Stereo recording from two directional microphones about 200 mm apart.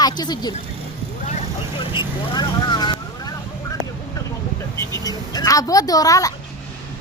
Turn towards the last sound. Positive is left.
turn(degrees=15)  # may be behind; listen again after turning